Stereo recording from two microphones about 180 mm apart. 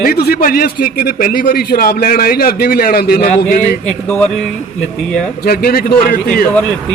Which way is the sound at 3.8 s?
5° left (ahead or behind).